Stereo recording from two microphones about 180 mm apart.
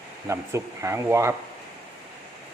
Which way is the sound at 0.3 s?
15° right (ahead or behind).